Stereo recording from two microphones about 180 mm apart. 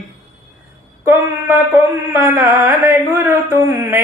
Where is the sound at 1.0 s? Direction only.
15° right (ahead or behind).